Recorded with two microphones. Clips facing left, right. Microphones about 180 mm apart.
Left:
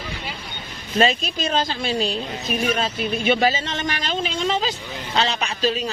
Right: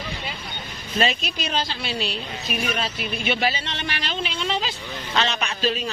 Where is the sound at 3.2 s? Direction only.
45° left (ahead or behind).